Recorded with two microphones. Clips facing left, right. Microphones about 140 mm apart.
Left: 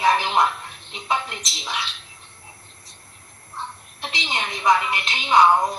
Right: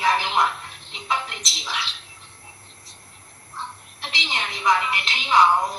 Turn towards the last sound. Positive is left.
turn(degrees=20)  # may be behind; listen again after turning